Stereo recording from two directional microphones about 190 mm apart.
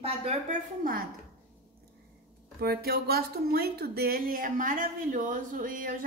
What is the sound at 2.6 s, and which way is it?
Speech, 55° right (ahead or behind).